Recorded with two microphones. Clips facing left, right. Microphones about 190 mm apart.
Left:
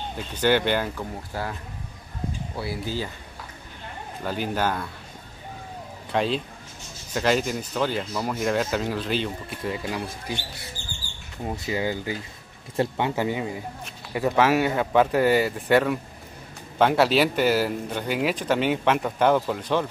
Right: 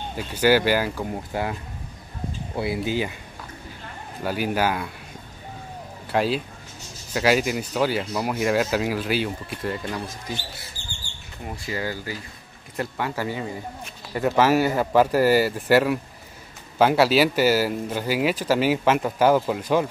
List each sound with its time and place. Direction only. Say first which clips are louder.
0.1 s speech: right 3 dB; 5° right (ahead or behind)
1.3 s speech: right 4 dB; 20° right (ahead or behind)
2.5 s speech: right 7 dB; 20° right (ahead or behind)
4.2 s speech: right 3 dB; 10° right (ahead or behind)
6.1 s speech: right 2 dB; 5° right (ahead or behind)
11.4 s speech: left 3 dB; 20° left (ahead or behind)
13.8 s speech: right 1 dB; centre (ahead or behind)